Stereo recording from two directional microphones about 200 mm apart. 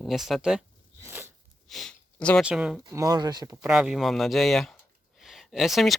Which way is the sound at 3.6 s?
5° right (ahead or behind).